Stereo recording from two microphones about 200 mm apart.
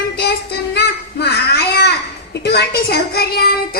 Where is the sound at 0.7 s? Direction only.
55° left (ahead or behind).